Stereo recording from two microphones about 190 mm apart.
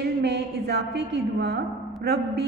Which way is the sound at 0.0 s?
60° right (ahead or behind).